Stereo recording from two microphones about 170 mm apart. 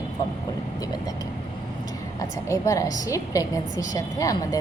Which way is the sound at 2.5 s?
20° left (ahead or behind).